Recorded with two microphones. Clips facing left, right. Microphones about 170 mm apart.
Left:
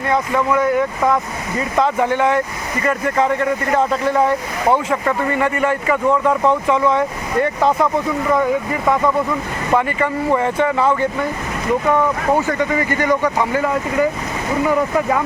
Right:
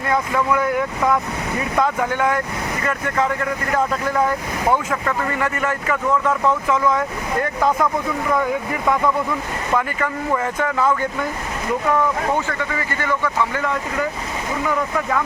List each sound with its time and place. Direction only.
0.1 s speech: centre (ahead or behind)
4.9 s speech: 5° left (ahead or behind)
6.1 s speech: 30° left (ahead or behind)
9.7 s speech: 5° left (ahead or behind)
12.5 s speech: 20° left (ahead or behind)